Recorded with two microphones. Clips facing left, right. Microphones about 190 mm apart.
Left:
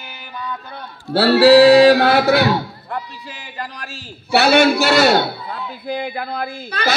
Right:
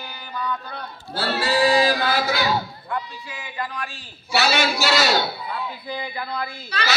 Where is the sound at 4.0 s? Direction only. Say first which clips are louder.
Left 7 dB; 60° left (ahead or behind).